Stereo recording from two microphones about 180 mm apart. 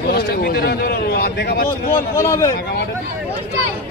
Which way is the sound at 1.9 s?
15° left (ahead or behind).